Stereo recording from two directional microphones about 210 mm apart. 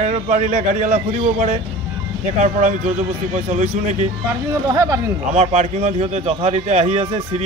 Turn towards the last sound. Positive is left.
turn(degrees=-30)  # may be behind; listen again after turning